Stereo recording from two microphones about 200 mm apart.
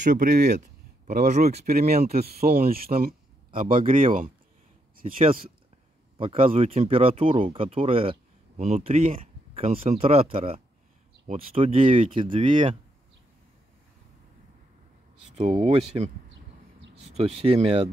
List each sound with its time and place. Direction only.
0.1 s speech: 55° right (ahead or behind); by 12.4 s 25° right (ahead or behind)
15.3 s speech: 30° right (ahead or behind)
17.1 s speech: 30° right (ahead or behind)